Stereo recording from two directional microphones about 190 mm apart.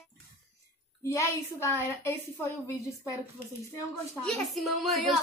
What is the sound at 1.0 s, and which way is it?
A woman's voice, 15° left (ahead or behind).